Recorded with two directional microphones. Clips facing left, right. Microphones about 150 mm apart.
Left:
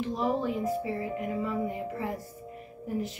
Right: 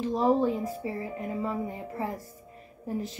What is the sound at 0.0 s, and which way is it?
A woman's voice, 35° right (ahead or behind).